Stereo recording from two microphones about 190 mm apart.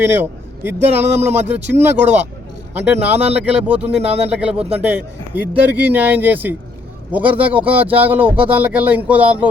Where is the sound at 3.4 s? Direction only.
5° right (ahead or behind).